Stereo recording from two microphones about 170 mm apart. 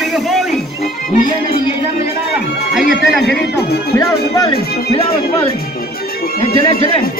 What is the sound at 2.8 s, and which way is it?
Music, 75° left (ahead or behind).